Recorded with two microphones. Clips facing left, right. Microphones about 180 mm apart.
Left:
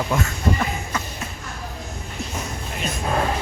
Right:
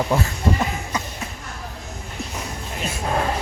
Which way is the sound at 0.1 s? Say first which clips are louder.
Right 1 dB; 35° right (ahead or behind).